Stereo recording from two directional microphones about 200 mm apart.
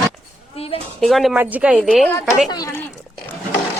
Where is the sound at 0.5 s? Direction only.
30° left (ahead or behind).